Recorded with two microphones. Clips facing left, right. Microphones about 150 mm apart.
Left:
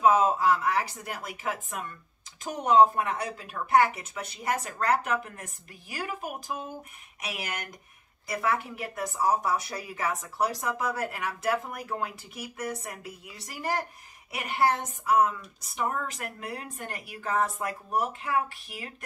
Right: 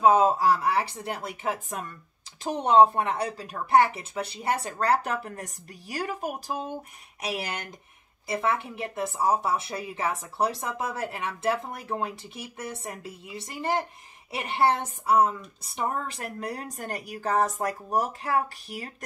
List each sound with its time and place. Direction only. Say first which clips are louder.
0.0 s a woman's voice: right 2 dB; 35° right (ahead or behind)